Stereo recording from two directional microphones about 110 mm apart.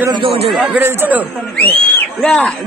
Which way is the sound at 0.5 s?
15° right (ahead or behind).